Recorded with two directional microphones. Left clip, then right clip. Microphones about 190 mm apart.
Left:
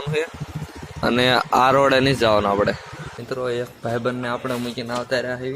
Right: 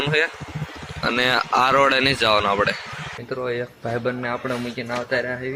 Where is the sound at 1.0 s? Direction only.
50° left (ahead or behind); by 2.6 s 30° left (ahead or behind).